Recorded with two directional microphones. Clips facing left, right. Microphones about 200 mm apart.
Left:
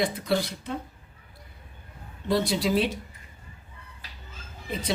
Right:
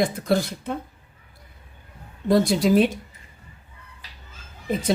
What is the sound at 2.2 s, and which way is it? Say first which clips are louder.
Speech: right 6 dB; 50° right (ahead or behind).